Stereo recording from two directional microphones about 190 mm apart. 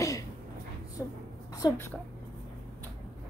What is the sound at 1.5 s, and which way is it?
Speech, 15° left (ahead or behind).